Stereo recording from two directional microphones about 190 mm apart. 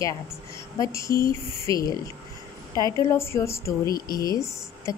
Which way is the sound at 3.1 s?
15° left (ahead or behind).